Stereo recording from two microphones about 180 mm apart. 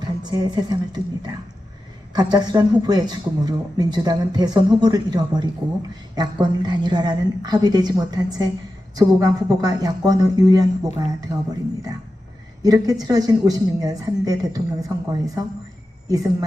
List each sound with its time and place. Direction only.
0.2 s speech: 25° right (ahead or behind)
12.6 s speech: 20° right (ahead or behind)